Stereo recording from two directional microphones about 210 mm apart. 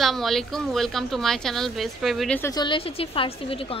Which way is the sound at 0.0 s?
Centre (ahead or behind).